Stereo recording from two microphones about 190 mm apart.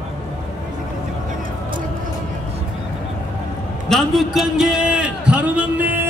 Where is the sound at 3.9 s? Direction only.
Centre (ahead or behind).